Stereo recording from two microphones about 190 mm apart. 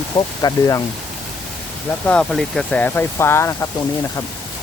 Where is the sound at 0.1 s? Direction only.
15° left (ahead or behind).